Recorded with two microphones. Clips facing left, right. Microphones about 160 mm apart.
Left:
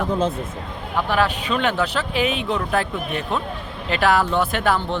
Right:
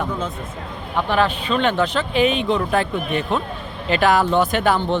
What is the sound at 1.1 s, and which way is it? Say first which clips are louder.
Speech: right 2 dB; 5° left (ahead or behind).